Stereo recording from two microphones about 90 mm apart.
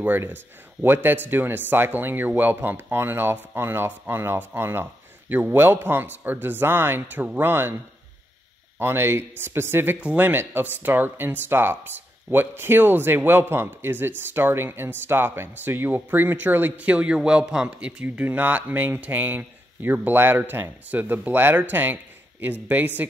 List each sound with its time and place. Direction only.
0.0 s speech: 20° right (ahead or behind)
8.7 s speech: 25° right (ahead or behind)